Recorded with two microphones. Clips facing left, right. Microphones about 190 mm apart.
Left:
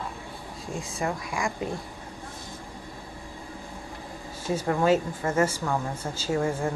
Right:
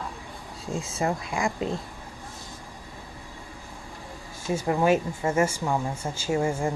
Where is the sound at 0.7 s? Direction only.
25° right (ahead or behind).